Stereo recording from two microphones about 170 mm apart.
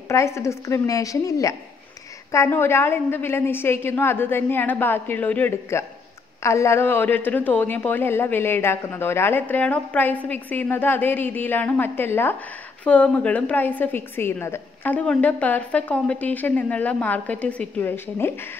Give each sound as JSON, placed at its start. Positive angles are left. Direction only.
{"t": 0.1, "sound": "a woman's voice", "side_deg": 15}